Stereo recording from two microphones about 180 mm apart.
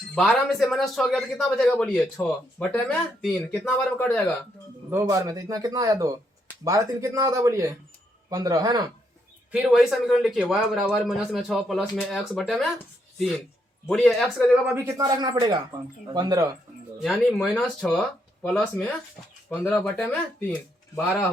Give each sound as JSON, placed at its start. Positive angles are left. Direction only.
{"t": 0.1, "sound": "a man's voice", "side_deg": 5}
{"t": 4.9, "sound": "speech", "side_deg": -15}
{"t": 9.5, "sound": "a man's voice", "side_deg": 0}
{"t": 13.9, "sound": "a man's voice", "side_deg": 0}
{"t": 14.6, "sound": "speech", "side_deg": -10}
{"t": 17.0, "sound": "a man's voice", "side_deg": 0}